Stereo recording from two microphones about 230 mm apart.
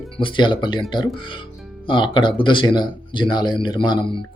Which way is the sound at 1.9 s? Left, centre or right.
Left.